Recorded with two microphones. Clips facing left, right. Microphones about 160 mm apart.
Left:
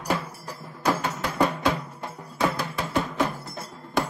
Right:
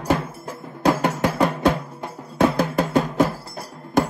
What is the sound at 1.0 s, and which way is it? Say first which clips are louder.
Music: right 5 dB; 55° right (ahead or behind).